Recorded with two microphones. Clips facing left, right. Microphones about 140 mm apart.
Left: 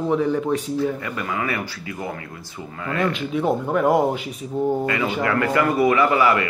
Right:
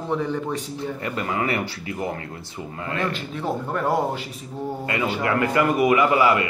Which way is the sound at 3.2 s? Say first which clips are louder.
Left 6 dB; 5° left (ahead or behind).